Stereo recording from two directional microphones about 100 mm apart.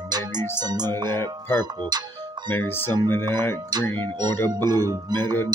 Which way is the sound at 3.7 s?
40° right (ahead or behind).